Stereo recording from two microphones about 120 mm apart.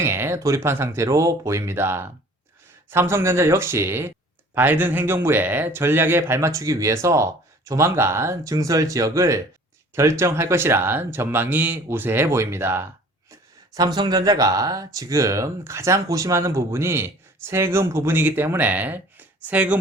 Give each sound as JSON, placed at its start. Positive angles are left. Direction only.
{"t": 0.0, "sound": "speech", "side_deg": -20}
{"t": 13.7, "sound": "speech", "side_deg": -35}